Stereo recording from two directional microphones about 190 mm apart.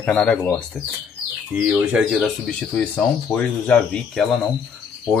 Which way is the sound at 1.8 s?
5° right (ahead or behind).